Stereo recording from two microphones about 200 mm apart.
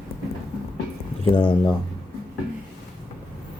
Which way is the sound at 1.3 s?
25° left (ahead or behind).